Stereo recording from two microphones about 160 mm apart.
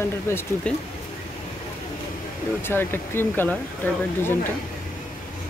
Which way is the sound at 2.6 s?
15° left (ahead or behind).